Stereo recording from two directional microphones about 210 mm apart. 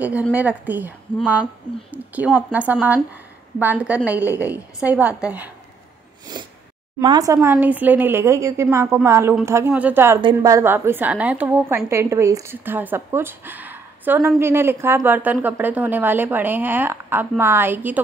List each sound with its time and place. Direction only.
0.0 s a woman's voice: 5° right (ahead or behind)
6.3 s a sound: 20° right (ahead or behind)
7.0 s a woman's voice: 20° right (ahead or behind)